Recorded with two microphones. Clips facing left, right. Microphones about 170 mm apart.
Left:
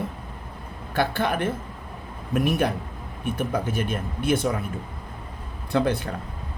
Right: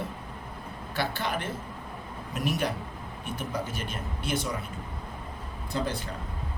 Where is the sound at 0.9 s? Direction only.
55° left (ahead or behind).